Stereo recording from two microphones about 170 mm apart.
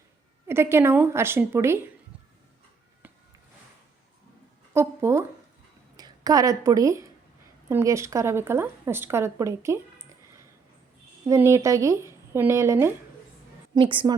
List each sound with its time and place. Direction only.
0.4 s speech: 15° right (ahead or behind)
4.7 s a woman's voice: 15° right (ahead or behind)
11.3 s speech: 15° right (ahead or behind)
13.7 s a woman's voice: 30° right (ahead or behind)